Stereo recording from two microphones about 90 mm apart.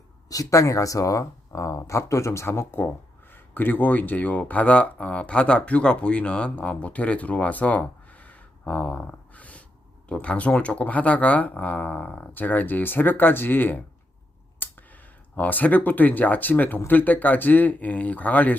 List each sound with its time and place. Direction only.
0.3 s speech: 40° left (ahead or behind); by 18.5 s 15° left (ahead or behind)